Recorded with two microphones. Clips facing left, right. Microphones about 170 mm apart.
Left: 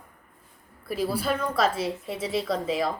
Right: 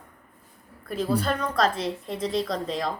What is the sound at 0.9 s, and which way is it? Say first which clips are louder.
A woman's voice: right 1 dB; 5° left (ahead or behind).